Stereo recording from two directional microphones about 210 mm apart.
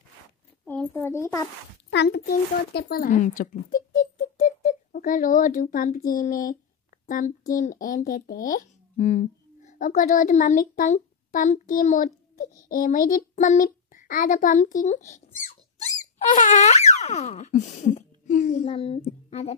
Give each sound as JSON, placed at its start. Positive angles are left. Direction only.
{"t": 0.7, "sound": "a child's voice", "side_deg": 10}
{"t": 1.9, "sound": "a child's voice", "side_deg": 55}
{"t": 16.3, "sound": "a sound", "side_deg": 35}
{"t": 18.9, "sound": "speech", "side_deg": 35}